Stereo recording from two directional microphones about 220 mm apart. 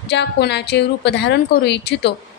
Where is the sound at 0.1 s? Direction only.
50° left (ahead or behind).